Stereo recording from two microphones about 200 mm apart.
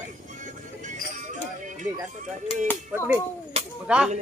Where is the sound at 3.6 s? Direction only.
30° right (ahead or behind).